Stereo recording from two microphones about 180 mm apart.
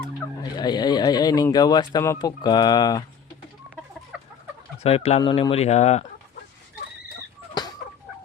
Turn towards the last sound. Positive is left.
turn(degrees=20)  # may be behind; listen again after turning